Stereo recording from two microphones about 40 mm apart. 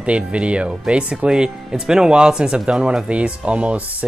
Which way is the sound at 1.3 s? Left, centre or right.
Centre.